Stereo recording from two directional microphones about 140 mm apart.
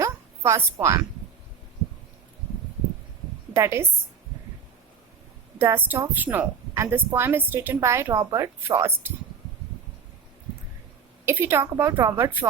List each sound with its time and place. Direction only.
0.0 s a sound: 20° right (ahead or behind)
3.5 s a woman's voice: 20° right (ahead or behind)
5.5 s a woman's voice: 15° right (ahead or behind)
11.3 s a woman's voice: 15° right (ahead or behind)